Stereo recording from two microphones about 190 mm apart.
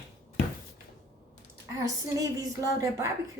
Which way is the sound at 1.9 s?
15° right (ahead or behind).